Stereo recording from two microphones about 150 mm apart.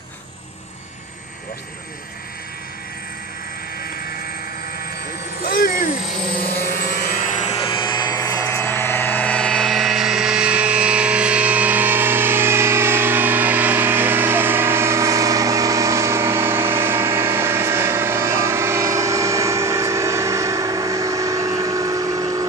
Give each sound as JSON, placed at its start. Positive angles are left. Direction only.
{"t": 5.4, "sound": "electric shaver", "side_deg": 70}
{"t": 6.6, "sound": "vehicle", "side_deg": 80}